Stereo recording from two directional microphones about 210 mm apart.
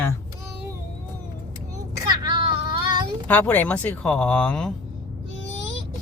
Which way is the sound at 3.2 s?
5° left (ahead or behind).